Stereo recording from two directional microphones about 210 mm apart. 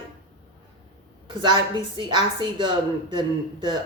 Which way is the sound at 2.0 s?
25° right (ahead or behind).